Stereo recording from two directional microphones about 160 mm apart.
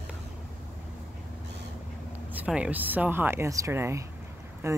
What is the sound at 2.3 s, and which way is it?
Speech, 10° right (ahead or behind).